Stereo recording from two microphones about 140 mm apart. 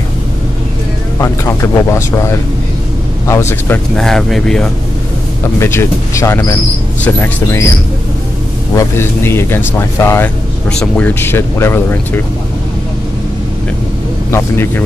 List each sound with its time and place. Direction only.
1.2 s speech: 20° left (ahead or behind)
3.9 s speech: 5° left (ahead or behind)
5.6 s speech: 20° left (ahead or behind)
8.7 s speech: 15° left (ahead or behind)
10.7 s speech: 5° left (ahead or behind)